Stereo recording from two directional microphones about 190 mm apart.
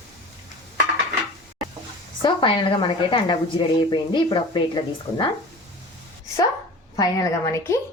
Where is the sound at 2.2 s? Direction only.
25° left (ahead or behind).